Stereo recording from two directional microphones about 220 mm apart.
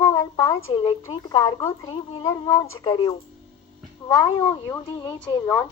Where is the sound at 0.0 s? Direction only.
15° left (ahead or behind).